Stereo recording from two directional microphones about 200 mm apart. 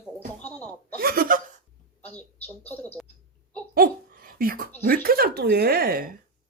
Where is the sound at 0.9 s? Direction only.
45° right (ahead or behind).